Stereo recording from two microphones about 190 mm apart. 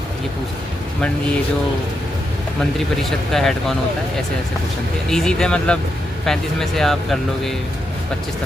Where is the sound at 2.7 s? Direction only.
Centre (ahead or behind).